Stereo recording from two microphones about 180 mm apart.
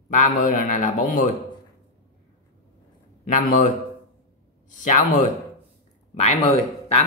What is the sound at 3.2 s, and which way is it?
Speech, 45° left (ahead or behind).